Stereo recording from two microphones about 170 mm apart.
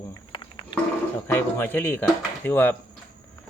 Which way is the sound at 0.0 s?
20° left (ahead or behind).